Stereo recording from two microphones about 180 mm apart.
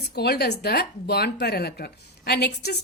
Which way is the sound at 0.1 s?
60° left (ahead or behind).